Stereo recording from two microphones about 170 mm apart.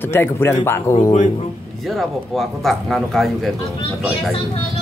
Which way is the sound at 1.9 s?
Centre (ahead or behind).